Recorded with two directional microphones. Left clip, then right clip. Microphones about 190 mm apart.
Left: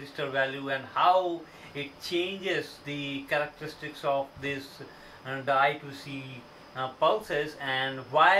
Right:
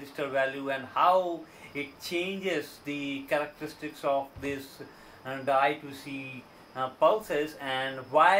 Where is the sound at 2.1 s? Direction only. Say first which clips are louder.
Left 2 dB; 15° right (ahead or behind).